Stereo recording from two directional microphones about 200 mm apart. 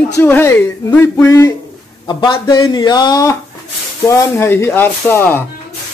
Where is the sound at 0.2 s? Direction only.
10° left (ahead or behind).